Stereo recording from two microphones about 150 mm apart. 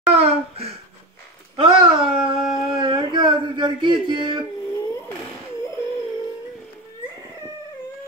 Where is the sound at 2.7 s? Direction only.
30° right (ahead or behind).